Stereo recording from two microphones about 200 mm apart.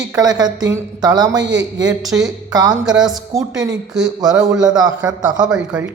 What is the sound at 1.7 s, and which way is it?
A woman's voice, 20° right (ahead or behind).